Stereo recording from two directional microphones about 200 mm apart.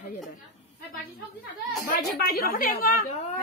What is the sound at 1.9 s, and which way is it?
A woman's voice, 50° left (ahead or behind).